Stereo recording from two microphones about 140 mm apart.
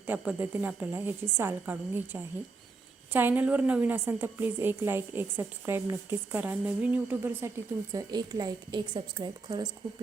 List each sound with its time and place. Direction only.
0.0 s a woman's voice: 15° right (ahead or behind)
7.9 s a woman's voice: 25° right (ahead or behind)